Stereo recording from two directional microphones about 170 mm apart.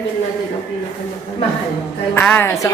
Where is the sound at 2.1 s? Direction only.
10° left (ahead or behind).